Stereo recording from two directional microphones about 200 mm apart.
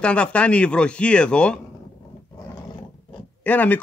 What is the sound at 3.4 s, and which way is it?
Speech, 10° left (ahead or behind).